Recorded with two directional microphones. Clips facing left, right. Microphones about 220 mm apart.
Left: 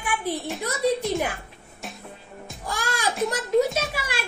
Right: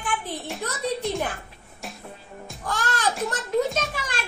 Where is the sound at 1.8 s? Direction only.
Centre (ahead or behind).